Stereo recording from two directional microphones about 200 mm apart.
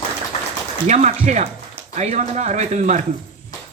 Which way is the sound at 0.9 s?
35° right (ahead or behind).